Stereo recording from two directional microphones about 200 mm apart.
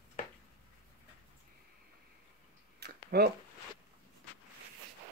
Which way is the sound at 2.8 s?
55° right (ahead or behind).